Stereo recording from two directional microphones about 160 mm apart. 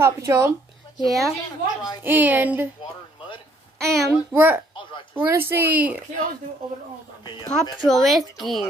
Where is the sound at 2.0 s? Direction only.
10° right (ahead or behind).